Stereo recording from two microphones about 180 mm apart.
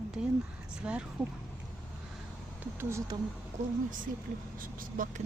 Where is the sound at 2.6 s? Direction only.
15° right (ahead or behind).